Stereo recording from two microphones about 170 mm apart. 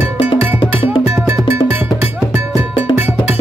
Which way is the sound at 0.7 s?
15° right (ahead or behind).